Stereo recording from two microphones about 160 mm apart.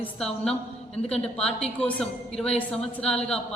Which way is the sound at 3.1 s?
40° left (ahead or behind).